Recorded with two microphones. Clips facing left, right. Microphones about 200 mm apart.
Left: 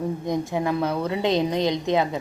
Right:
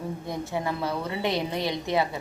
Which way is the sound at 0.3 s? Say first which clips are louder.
Left 5 dB; 15° left (ahead or behind).